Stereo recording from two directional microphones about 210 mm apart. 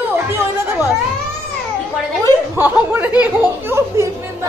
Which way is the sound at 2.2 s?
10° right (ahead or behind).